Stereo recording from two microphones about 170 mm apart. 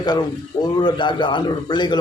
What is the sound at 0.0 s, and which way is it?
A man's voice, 25° left (ahead or behind).